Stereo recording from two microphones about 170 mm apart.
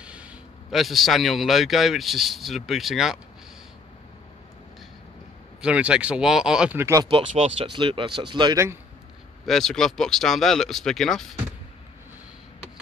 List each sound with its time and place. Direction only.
0.0 s a man's voice: 5° right (ahead or behind)
5.6 s speech: 5° right (ahead or behind)
7.1 s speech: 35° right (ahead or behind); by 8.7 s 20° right (ahead or behind)
9.5 s speech: centre (ahead or behind)